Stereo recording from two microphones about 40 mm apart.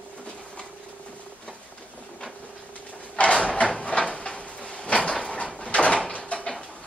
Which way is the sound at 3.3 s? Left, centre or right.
Left.